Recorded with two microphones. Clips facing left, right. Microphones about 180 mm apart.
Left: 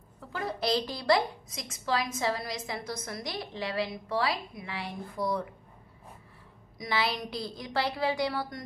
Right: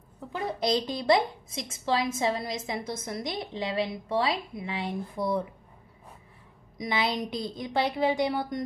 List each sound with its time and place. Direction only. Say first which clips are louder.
0.3 s a woman's voice: right 2 dB; 20° right (ahead or behind)
6.8 s a woman's voice: right 2 dB; 20° right (ahead or behind)